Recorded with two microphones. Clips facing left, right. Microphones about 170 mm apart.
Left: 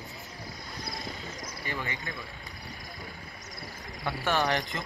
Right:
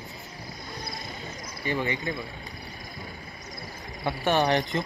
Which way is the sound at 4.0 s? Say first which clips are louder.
Right 4 dB; 20° right (ahead or behind).